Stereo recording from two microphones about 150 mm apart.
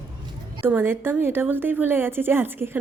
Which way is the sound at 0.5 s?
15° right (ahead or behind).